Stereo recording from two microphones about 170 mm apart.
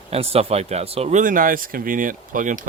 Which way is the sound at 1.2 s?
55° right (ahead or behind).